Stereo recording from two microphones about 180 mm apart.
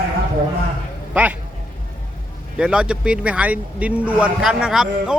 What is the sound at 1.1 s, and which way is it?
Speech, 10° right (ahead or behind).